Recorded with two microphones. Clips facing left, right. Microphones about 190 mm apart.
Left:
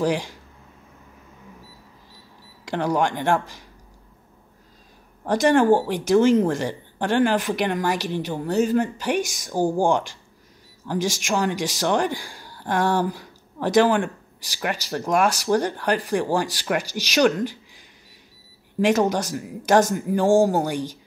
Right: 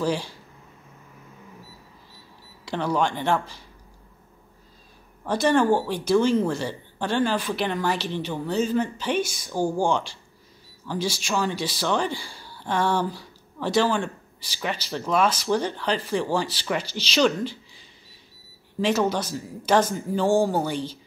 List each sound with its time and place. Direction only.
0.0 s speech: 15° left (ahead or behind)
2.7 s speech: 15° left (ahead or behind)
5.3 s speech: 15° left (ahead or behind)
18.8 s speech: 15° left (ahead or behind)